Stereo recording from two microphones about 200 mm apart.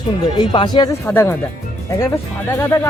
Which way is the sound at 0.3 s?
20° left (ahead or behind).